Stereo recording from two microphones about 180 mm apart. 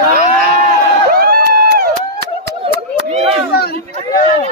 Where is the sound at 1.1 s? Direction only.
55° right (ahead or behind).